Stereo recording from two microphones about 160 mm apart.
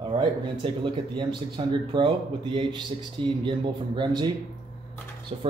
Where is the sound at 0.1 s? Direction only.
30° right (ahead or behind).